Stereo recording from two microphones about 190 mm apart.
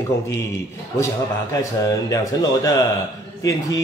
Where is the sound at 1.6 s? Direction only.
15° left (ahead or behind).